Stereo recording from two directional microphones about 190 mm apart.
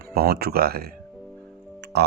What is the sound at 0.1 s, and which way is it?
Speech, 55° right (ahead or behind).